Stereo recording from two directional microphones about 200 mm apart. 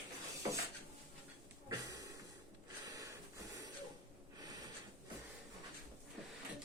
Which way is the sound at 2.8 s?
15° right (ahead or behind).